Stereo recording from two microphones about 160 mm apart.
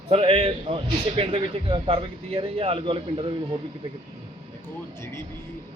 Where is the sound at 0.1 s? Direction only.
35° right (ahead or behind).